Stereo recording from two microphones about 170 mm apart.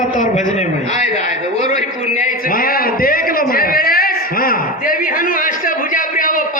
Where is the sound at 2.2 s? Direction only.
55° left (ahead or behind).